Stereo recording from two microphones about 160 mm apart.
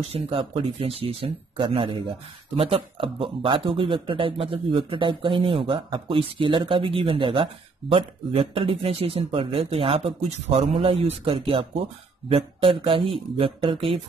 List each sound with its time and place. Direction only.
0.1 s speech: 35° right (ahead or behind)